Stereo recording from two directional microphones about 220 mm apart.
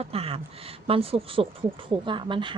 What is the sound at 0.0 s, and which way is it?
Speech, 25° right (ahead or behind).